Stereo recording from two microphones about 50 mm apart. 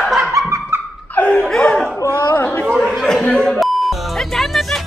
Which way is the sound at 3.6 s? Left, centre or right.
Centre.